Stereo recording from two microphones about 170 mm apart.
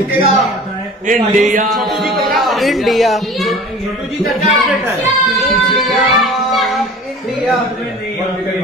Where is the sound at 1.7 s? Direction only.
Centre (ahead or behind).